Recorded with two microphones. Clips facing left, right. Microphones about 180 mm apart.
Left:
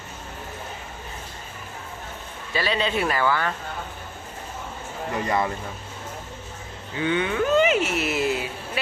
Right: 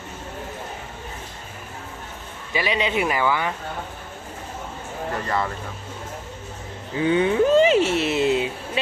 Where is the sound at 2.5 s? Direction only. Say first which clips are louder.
Right 1 dB; 15° right (ahead or behind).